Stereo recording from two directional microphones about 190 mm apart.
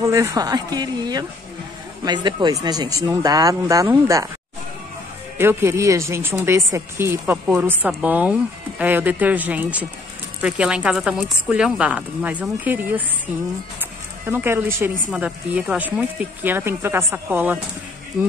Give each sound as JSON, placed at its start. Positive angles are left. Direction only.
{"t": 0.0, "sound": "speech", "side_deg": -15}
{"t": 5.4, "sound": "speech", "side_deg": -15}
{"t": 14.2, "sound": "speech", "side_deg": -10}